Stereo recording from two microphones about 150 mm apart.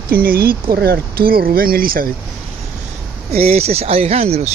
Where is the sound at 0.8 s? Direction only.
90° right; by 2.1 s 75° right (ahead or behind).